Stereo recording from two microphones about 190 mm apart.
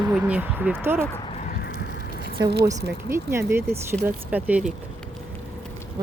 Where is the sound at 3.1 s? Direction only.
15° right (ahead or behind).